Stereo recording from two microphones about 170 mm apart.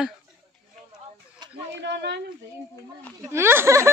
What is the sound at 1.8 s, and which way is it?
Speech, 90° right.